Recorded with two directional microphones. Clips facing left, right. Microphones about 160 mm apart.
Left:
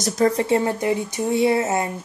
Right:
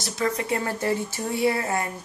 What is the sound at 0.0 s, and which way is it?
Speech, 40° left (ahead or behind).